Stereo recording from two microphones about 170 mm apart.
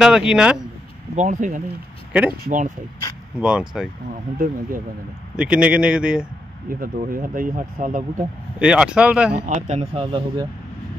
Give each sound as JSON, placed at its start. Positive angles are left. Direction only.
{"t": 0.0, "sound": "a man's voice", "side_deg": -5}
{"t": 1.1, "sound": "speech", "side_deg": -45}
{"t": 3.3, "sound": "a man's voice", "side_deg": -5}
{"t": 4.1, "sound": "speech", "side_deg": -55}
{"t": 5.3, "sound": "a man's voice", "side_deg": -5}
{"t": 6.7, "sound": "speech", "side_deg": -55}
{"t": 8.5, "sound": "a man's voice", "side_deg": -5}
{"t": 9.5, "sound": "speech", "side_deg": -45}